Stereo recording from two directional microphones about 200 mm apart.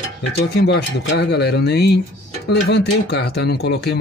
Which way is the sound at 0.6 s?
60° left (ahead or behind).